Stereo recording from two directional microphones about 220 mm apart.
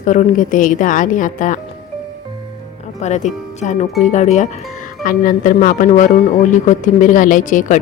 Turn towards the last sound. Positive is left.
turn(degrees=35)  # may be behind; listen again after turning